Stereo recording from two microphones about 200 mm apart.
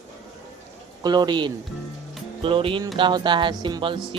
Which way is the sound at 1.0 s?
20° right (ahead or behind).